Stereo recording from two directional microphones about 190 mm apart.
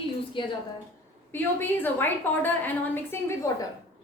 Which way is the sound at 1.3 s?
10° left (ahead or behind).